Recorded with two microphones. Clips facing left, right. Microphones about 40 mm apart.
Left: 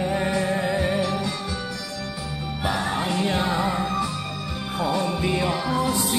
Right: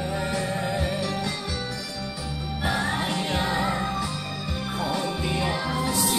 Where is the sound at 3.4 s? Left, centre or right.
Centre.